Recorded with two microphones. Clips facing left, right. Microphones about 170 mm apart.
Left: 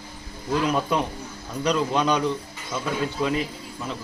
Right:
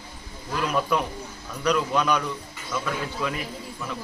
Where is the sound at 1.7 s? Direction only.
25° left (ahead or behind).